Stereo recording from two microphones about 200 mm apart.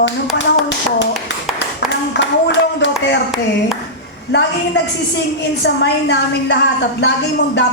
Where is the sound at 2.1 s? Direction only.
60° left (ahead or behind).